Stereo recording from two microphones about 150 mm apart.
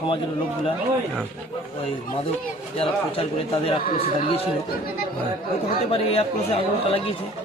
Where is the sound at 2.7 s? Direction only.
40° left (ahead or behind).